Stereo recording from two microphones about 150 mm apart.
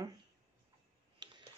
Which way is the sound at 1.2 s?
30° right (ahead or behind).